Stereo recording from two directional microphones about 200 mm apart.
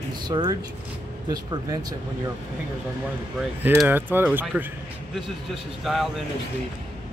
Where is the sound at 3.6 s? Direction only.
10° right (ahead or behind).